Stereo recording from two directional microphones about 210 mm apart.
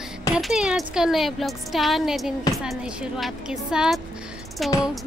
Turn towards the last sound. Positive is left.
turn(degrees=0)  # may be behind; listen again after turning